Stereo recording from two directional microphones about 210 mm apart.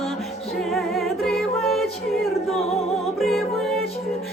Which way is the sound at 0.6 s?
Centre (ahead or behind).